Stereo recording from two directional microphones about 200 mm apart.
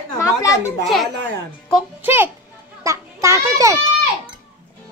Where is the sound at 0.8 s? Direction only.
Centre (ahead or behind).